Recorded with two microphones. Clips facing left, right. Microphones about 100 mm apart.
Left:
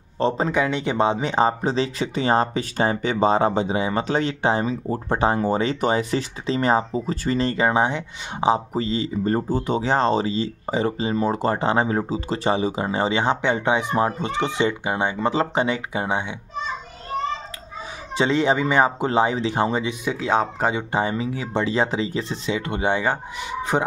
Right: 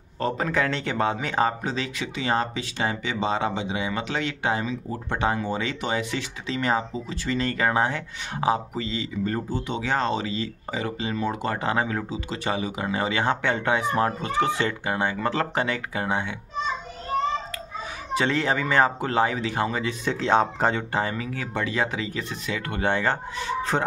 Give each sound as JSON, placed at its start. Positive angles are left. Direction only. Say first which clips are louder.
{"t": 0.2, "sound": "speech", "louder": "left 5 dB", "side_deg": 25}
{"t": 0.6, "sound": "speech", "louder": "left 3 dB", "side_deg": 15}
{"t": 8.7, "sound": "speech", "louder": "left 5 dB", "side_deg": 35}
{"t": 18.1, "sound": "speech", "louder": "left 4 dB", "side_deg": 20}
{"t": 19.9, "sound": "speech", "louder": "even", "side_deg": 5}
{"t": 20.9, "sound": "speech", "louder": "left 4 dB", "side_deg": 20}